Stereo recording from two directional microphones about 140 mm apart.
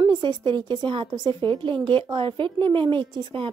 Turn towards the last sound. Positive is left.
turn(degrees=-35)  # may be behind; listen again after turning